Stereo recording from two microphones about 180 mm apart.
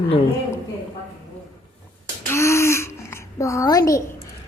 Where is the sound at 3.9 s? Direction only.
15° left (ahead or behind).